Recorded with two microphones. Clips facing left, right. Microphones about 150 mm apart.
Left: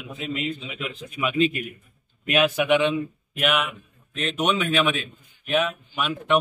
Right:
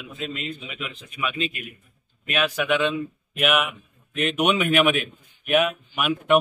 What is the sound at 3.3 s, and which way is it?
Speech, 5° right (ahead or behind).